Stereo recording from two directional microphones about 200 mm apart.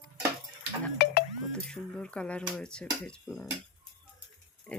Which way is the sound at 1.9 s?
5° left (ahead or behind).